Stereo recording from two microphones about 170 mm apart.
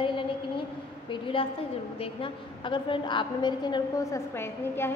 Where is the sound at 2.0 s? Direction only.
30° left (ahead or behind); by 4.9 s 15° left (ahead or behind).